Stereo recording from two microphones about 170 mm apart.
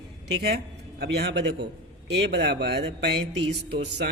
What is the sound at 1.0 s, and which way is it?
Speech, 80° right.